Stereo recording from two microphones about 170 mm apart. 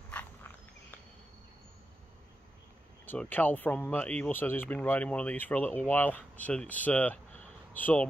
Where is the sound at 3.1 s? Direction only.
10° left (ahead or behind).